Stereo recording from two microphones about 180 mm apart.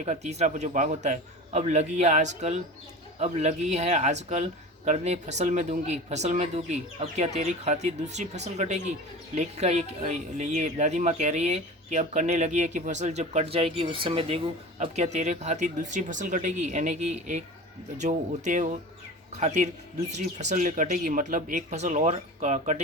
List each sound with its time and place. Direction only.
0.0 s speech: 40° right (ahead or behind)